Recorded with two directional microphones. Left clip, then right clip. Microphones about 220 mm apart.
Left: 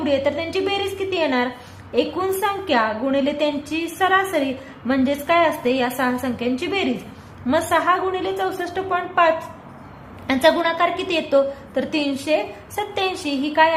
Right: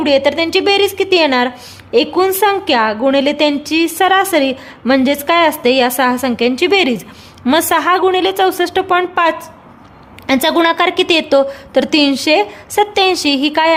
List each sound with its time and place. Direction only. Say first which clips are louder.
0.0 s a woman's voice: right 8 dB; 50° right (ahead or behind)